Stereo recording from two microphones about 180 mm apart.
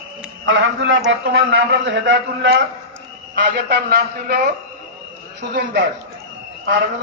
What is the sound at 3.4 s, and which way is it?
A man's voice, 60° right (ahead or behind).